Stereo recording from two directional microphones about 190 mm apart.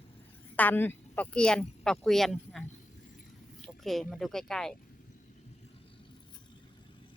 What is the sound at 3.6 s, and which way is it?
Speech, centre (ahead or behind).